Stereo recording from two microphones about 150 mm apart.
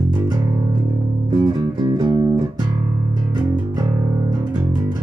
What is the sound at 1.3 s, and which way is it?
Music, 30° right (ahead or behind).